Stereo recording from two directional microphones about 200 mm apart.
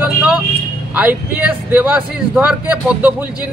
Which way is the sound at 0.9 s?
10° right (ahead or behind).